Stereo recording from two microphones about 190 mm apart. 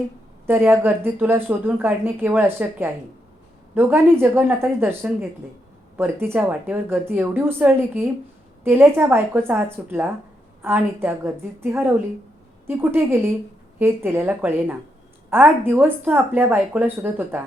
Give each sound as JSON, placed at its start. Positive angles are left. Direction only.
{"t": 0.4, "sound": "a woman's voice", "side_deg": -10}